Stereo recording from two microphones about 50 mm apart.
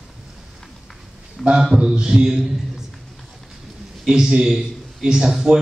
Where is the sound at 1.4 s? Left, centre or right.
Centre.